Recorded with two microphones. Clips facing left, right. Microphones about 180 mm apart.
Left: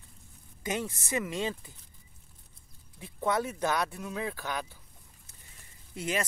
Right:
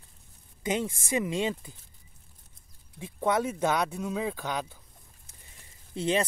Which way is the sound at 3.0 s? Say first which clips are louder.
Right 3 dB; 15° right (ahead or behind).